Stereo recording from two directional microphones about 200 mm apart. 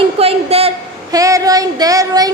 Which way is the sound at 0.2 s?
30° right (ahead or behind).